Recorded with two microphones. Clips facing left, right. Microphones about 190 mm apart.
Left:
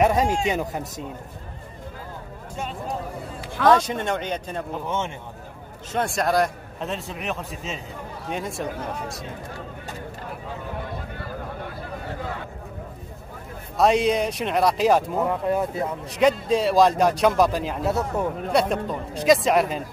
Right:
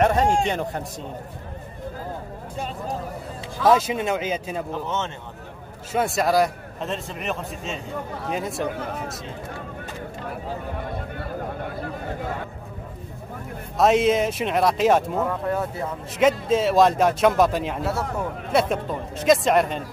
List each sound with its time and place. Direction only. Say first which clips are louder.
0.0 s a man's voice: right 1 dB; centre (ahead or behind)
3.6 s a man's voice: even; 5° right (ahead or behind)
4.8 s speech: left 1 dB; 10° left (ahead or behind)
5.9 s a man's voice: right 2 dB; 5° right (ahead or behind)
8.6 s speech: right 1 dB; 60° right (ahead or behind)
13.7 s a man's voice: right 1 dB; centre (ahead or behind)
15.2 s speech: left 2 dB; 15° left (ahead or behind)
16.1 s a man's voice: right 1 dB; centre (ahead or behind)